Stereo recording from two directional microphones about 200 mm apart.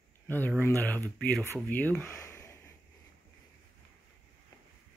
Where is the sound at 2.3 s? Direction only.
15° left (ahead or behind).